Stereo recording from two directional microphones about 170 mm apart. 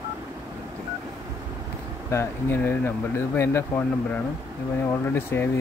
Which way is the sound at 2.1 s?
15° left (ahead or behind).